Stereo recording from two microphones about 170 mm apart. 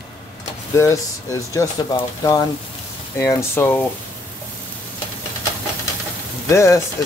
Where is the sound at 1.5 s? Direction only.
20° left (ahead or behind).